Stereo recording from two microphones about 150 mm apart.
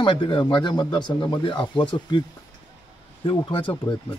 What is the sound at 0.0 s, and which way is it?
Speech, 35° left (ahead or behind).